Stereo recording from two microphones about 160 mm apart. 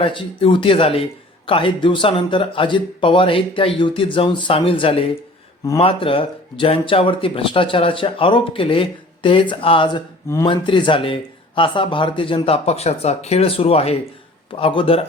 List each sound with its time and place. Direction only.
0.0 s speech: 35° left (ahead or behind)